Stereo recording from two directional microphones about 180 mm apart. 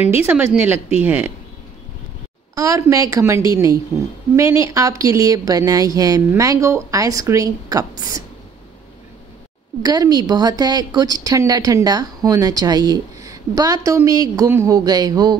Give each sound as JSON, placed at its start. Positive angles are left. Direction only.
{"t": 0.3, "sound": "speech", "side_deg": -10}
{"t": 2.5, "sound": "a woman's voice", "side_deg": -20}
{"t": 9.8, "sound": "a woman's voice", "side_deg": -20}